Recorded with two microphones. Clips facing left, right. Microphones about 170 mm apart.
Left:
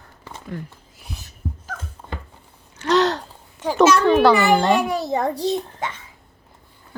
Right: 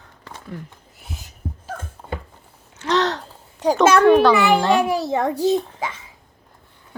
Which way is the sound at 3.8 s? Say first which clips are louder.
Right 1 dB; 55° right (ahead or behind).